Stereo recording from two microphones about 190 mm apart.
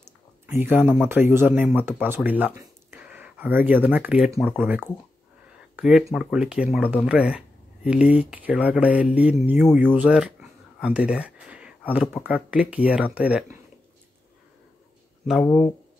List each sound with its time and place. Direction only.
0.0 s speech: 10° right (ahead or behind)
2.6 s a sound: 10° right (ahead or behind)
4.6 s speech: 10° right (ahead or behind)
10.8 s a sound: 5° right (ahead or behind)
11.9 s speech: 5° right (ahead or behind)
15.4 s speech: 10° left (ahead or behind)